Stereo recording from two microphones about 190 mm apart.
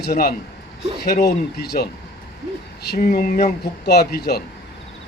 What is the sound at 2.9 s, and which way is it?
Speech, 55° left (ahead or behind).